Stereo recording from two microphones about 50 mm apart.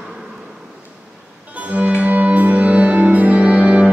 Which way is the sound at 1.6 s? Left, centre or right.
Right.